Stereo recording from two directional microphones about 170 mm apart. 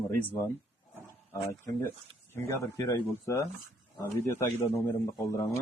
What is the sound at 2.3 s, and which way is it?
Speech, 15° left (ahead or behind).